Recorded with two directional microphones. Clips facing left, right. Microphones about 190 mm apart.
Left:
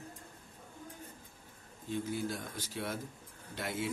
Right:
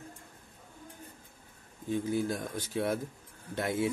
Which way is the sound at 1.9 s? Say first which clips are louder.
Right 5 dB; 50° right (ahead or behind).